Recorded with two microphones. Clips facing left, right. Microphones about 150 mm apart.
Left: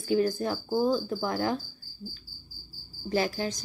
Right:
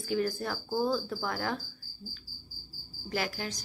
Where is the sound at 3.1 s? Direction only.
30° left (ahead or behind).